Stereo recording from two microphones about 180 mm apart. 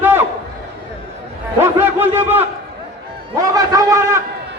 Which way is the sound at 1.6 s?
10° right (ahead or behind).